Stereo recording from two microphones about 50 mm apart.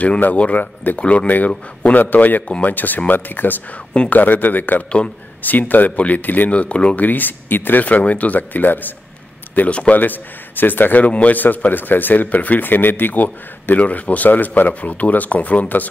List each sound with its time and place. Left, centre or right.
0.2 s speech: left
1.5 s speech: left
2.0 s speech: left
7.0 s speech: left
9.7 s speech: left
9.9 s speech: left